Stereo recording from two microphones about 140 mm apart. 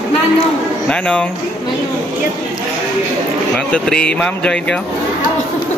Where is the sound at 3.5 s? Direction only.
5° left (ahead or behind).